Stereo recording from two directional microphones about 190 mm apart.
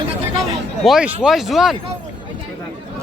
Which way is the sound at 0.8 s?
5° right (ahead or behind).